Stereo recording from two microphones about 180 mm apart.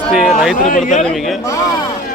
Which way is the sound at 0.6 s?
45° left (ahead or behind).